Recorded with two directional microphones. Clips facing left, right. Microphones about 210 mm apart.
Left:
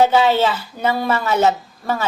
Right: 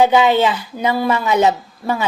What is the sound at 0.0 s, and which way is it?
A woman's voice, 15° right (ahead or behind).